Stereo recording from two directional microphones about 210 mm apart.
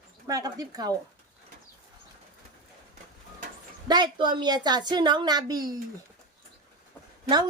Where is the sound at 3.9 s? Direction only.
20° right (ahead or behind).